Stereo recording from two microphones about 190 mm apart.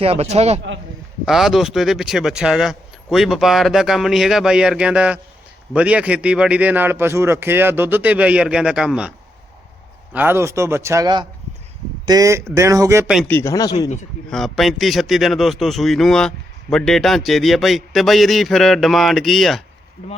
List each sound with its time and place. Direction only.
0.0 s speech: 30° right (ahead or behind)
1.2 s a man's voice: centre (ahead or behind)
13.2 s speech: 15° left (ahead or behind)
14.3 s a man's voice: centre (ahead or behind)